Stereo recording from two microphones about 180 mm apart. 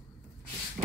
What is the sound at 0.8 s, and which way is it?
Rub, 30° right (ahead or behind).